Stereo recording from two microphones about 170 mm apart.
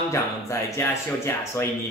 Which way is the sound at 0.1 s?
15° left (ahead or behind).